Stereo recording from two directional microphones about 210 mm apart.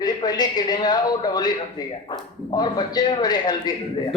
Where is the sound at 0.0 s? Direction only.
20° left (ahead or behind).